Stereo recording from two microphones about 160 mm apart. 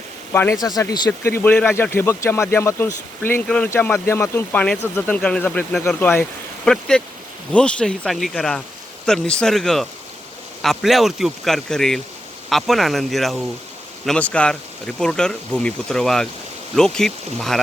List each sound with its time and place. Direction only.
0.3 s speech: 15° left (ahead or behind)
1.3 s speech: 15° left (ahead or behind)